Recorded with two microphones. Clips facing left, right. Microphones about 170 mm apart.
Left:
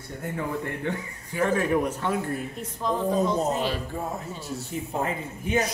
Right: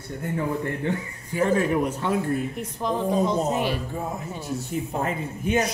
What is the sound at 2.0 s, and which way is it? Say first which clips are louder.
Speech: right 3 dB; 15° right (ahead or behind).